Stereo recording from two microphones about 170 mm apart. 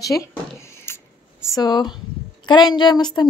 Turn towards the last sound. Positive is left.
turn(degrees=25)  # may be behind; listen again after turning